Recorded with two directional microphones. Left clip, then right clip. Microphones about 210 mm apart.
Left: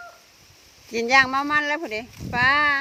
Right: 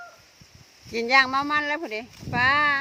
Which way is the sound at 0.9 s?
5° left (ahead or behind).